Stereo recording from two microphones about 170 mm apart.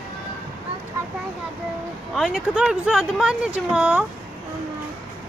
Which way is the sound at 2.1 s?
Centre (ahead or behind).